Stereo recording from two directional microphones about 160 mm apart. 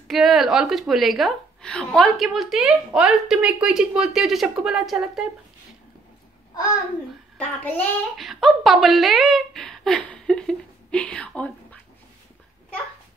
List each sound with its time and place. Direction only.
0.1 s a woman's voice: centre (ahead or behind)
7.3 s child singing: 10° left (ahead or behind)
8.2 s a woman's voice: centre (ahead or behind)